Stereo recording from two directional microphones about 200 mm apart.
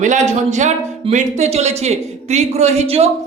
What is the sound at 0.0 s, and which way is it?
Speech, 35° right (ahead or behind).